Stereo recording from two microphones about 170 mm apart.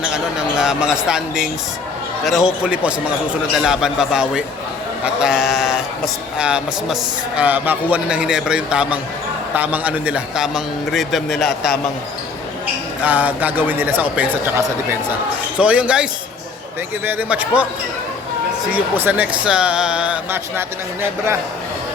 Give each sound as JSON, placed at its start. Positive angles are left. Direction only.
{"t": 0.0, "sound": "a man's voice", "side_deg": -5}
{"t": 13.0, "sound": "a man's voice", "side_deg": -10}
{"t": 17.1, "sound": "a man's voice", "side_deg": -10}
{"t": 18.7, "sound": "a man's voice", "side_deg": -10}